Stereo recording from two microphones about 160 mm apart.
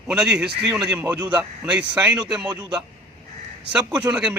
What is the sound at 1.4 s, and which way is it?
Speech, 5° right (ahead or behind).